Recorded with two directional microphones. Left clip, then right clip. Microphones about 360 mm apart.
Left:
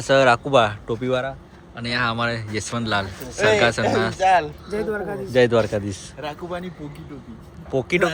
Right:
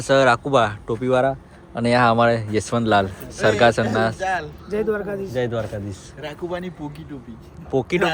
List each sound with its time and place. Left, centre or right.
0.1 s speech: centre
1.2 s speech: centre
4.2 s speech: left
4.7 s speech: centre
5.2 s a man's voice: centre
7.7 s speech: centre